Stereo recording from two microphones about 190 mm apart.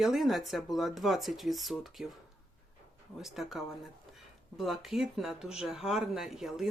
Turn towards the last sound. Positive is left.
turn(degrees=0)  # may be behind; listen again after turning